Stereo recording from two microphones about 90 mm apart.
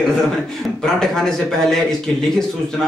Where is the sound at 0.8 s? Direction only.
5° left (ahead or behind).